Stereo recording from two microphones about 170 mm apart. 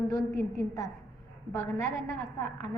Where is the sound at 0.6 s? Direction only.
20° left (ahead or behind).